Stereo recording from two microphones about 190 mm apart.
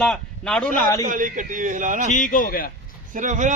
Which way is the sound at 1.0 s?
45° right (ahead or behind).